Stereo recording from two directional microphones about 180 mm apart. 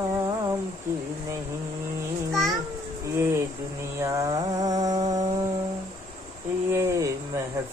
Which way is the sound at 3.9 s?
15° right (ahead or behind).